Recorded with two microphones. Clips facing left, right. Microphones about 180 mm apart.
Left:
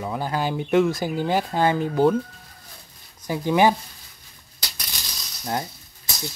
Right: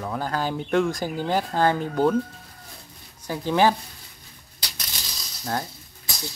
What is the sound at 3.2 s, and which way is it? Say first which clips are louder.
Speech: left 2 dB; 15° left (ahead or behind).